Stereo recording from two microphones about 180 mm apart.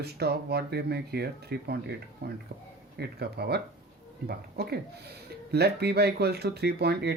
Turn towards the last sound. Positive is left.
turn(degrees=-65)  # may be behind; listen again after turning